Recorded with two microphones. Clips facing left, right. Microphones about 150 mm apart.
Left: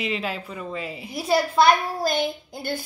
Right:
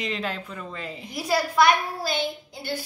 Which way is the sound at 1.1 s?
25° left (ahead or behind).